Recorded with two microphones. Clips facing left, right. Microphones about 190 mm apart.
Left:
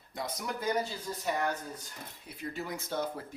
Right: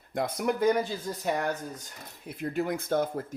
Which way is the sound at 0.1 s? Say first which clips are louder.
Right 9 dB; 55° right (ahead or behind).